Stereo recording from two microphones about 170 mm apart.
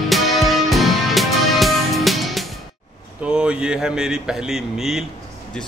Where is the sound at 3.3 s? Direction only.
5° right (ahead or behind).